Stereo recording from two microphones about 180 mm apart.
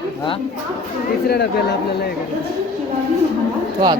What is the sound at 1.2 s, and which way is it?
Speech, 65° left (ahead or behind).